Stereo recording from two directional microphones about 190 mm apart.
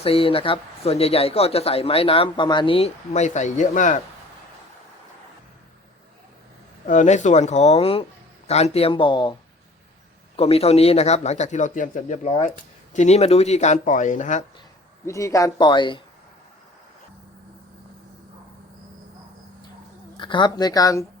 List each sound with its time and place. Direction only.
0.0 s speech: 30° left (ahead or behind)
6.8 s speech: 40° left (ahead or behind); by 9.3 s 25° left (ahead or behind)
10.3 s speech: 30° left (ahead or behind)
15.0 s speech: 15° left (ahead or behind)
20.1 s speech: 25° left (ahead or behind)